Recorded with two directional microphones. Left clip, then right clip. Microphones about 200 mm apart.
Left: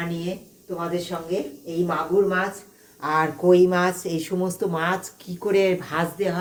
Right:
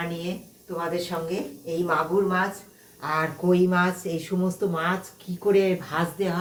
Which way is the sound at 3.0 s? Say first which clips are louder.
Left 4 dB; 30° left (ahead or behind).